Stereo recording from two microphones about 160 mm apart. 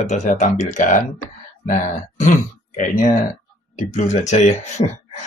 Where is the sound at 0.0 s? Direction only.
50° left (ahead or behind).